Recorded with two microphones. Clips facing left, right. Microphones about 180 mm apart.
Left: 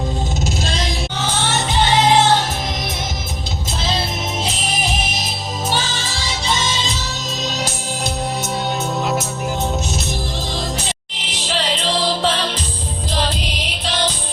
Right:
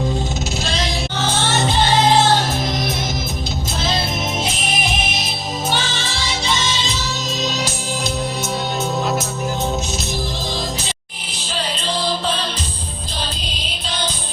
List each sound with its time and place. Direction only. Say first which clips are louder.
11.2 s music: left 3 dB; 90° left
13.1 s music: left 7 dB; 80° left